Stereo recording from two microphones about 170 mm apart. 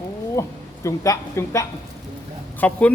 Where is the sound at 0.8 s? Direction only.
20° left (ahead or behind).